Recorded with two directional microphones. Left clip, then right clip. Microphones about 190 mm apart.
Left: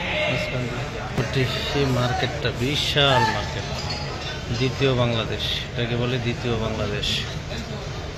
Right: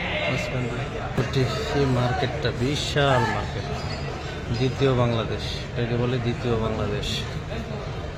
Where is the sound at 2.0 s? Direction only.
10° right (ahead or behind).